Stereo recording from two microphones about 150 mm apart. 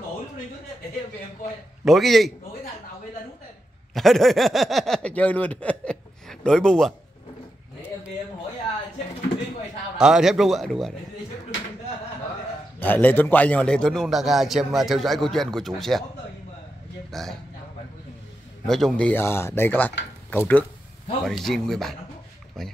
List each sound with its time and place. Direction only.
1.9 s a man's voice: centre (ahead or behind)
3.9 s speech: centre (ahead or behind)
9.9 s a man's voice: 5° right (ahead or behind)
12.8 s a man's voice: 10° left (ahead or behind)
17.1 s a man's voice: centre (ahead or behind)
18.7 s a man's voice: centre (ahead or behind)